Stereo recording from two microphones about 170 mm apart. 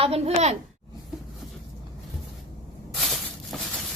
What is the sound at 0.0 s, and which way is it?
Speech, 35° right (ahead or behind).